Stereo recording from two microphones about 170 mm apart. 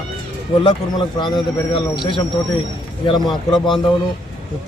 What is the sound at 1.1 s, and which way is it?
A man's voice, 25° left (ahead or behind).